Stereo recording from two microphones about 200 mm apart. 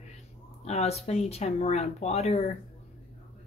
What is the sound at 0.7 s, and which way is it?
A woman's voice, 30° left (ahead or behind).